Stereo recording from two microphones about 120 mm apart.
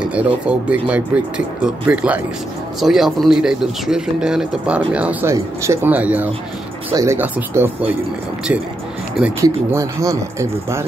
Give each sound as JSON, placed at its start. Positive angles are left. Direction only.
{"t": 0.1, "sound": "speech", "side_deg": -10}
{"t": 5.3, "sound": "speech", "side_deg": -25}
{"t": 6.9, "sound": "speech", "side_deg": -30}
{"t": 7.2, "sound": "speech", "side_deg": -15}
{"t": 9.4, "sound": "speech", "side_deg": -25}